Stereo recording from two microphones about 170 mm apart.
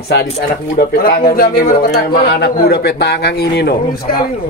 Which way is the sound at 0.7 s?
60° left (ahead or behind).